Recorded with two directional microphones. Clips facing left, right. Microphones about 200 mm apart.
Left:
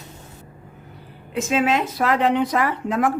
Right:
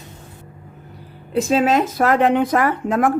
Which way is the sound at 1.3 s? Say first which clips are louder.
Right 4 dB; 35° right (ahead or behind).